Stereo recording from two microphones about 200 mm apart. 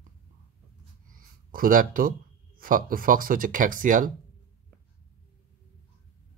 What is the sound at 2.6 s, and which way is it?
Speech, 45° right (ahead or behind).